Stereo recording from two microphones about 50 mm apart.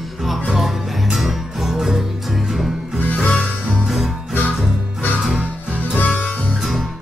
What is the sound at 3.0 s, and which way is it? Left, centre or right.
Music, left.